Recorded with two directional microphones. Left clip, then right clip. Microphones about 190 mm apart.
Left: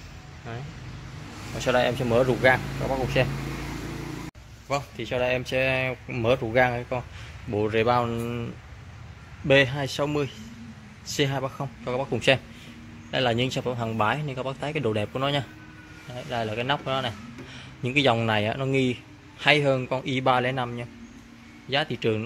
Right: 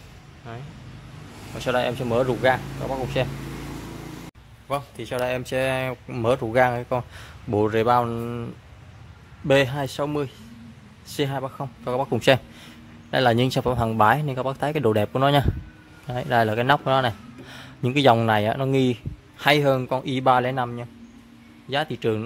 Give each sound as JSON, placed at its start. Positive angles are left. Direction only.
{"t": 1.6, "sound": "speech", "side_deg": -10}
{"t": 4.6, "sound": "speech", "side_deg": -10}
{"t": 9.5, "sound": "speech", "side_deg": -15}
{"t": 11.8, "sound": "speech", "side_deg": -20}
{"t": 16.1, "sound": "a man's voice", "side_deg": -35}